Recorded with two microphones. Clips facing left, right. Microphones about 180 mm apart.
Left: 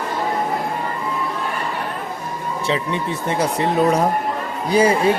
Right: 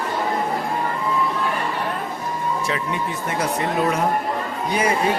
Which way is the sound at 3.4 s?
30° left (ahead or behind).